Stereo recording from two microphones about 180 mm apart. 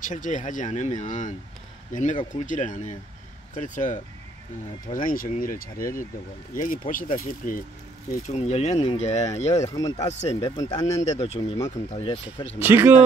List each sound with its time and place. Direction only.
0.0 s speech: 45° left (ahead or behind)
8.1 s speech: 40° left (ahead or behind)
9.8 s speech: 20° left (ahead or behind)
10.0 s speech: 40° left (ahead or behind)
10.6 s speech: 20° left (ahead or behind)
11.0 s speech: 35° left (ahead or behind)
12.5 s speech: 10° right (ahead or behind)